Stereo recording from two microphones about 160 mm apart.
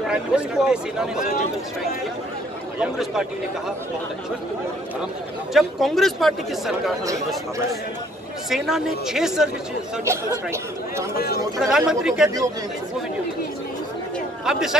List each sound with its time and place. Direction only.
0.0 s speech: 5° right (ahead or behind)
2.8 s speech: 5° right (ahead or behind)
5.5 s speech: centre (ahead or behind)
8.5 s speech: centre (ahead or behind)
10.0 s speech: 15° right (ahead or behind)
11.1 s speech: 75° left (ahead or behind)
11.6 s speech: 5° right (ahead or behind)
14.4 s speech: 5° right (ahead or behind)